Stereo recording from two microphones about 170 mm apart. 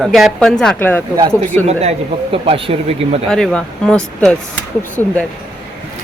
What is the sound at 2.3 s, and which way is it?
Speech, 35° right (ahead or behind).